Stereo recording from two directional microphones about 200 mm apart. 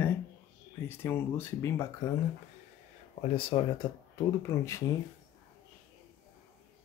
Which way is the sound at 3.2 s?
25° left (ahead or behind).